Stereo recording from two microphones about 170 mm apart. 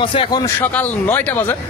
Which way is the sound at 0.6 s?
10° left (ahead or behind).